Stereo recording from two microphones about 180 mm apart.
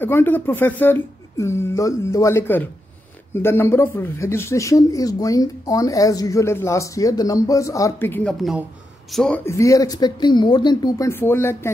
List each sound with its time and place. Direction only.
0.0 s speech: 10° left (ahead or behind)